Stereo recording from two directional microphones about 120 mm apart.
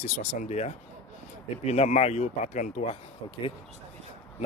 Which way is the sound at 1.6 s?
65° left (ahead or behind).